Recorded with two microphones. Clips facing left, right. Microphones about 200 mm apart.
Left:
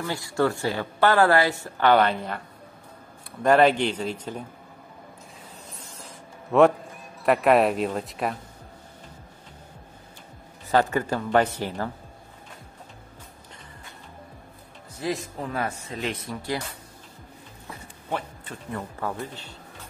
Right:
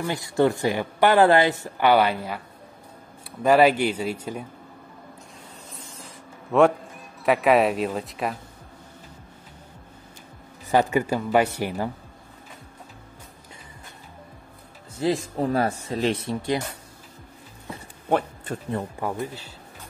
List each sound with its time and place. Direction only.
0.0 s speech: 20° right (ahead or behind)
6.5 s speech: centre (ahead or behind)
10.7 s speech: 10° right (ahead or behind)
15.0 s speech: 30° right (ahead or behind)
18.1 s speech: 45° right (ahead or behind)
18.9 s speech: 15° right (ahead or behind)